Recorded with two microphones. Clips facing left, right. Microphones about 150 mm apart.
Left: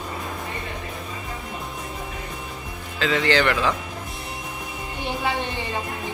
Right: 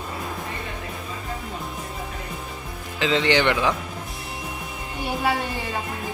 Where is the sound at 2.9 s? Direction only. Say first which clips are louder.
Even; 20° right (ahead or behind).